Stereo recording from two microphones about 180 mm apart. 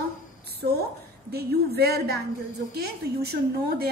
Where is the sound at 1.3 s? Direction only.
60° right (ahead or behind).